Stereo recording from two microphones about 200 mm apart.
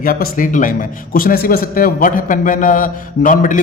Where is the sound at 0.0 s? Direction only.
45° left (ahead or behind).